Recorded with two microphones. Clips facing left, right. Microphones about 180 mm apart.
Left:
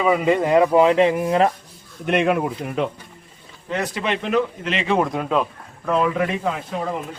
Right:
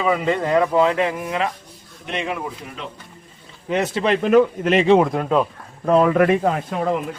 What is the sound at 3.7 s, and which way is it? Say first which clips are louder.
Speech: right 4 dB; 20° right (ahead or behind).